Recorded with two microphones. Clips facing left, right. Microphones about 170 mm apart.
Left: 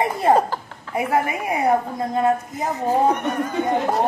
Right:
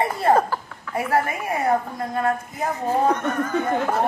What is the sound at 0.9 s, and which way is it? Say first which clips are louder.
A woman's voice: left 1 dB; 15° left (ahead or behind).